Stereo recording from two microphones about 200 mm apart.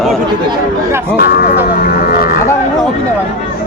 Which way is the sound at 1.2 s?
50° left (ahead or behind).